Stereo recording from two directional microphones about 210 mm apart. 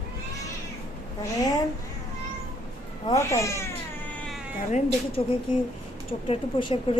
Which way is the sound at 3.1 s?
15° left (ahead or behind).